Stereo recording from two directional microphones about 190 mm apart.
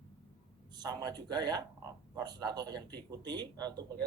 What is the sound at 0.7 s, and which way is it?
Speech, 20° right (ahead or behind).